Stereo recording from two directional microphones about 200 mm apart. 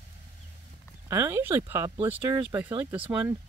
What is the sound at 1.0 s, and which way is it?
Speech, 10° right (ahead or behind).